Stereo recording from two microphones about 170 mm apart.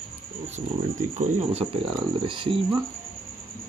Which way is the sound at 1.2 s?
35° right (ahead or behind).